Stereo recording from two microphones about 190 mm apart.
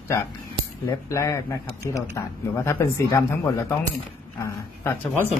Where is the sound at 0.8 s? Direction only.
15° left (ahead or behind).